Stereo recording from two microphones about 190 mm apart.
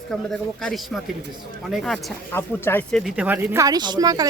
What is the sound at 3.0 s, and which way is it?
Speech, 5° right (ahead or behind).